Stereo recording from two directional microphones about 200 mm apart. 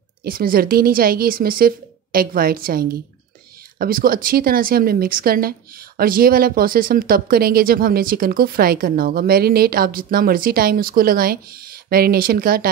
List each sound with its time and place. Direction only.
0.2 s a woman's voice: 50° right (ahead or behind)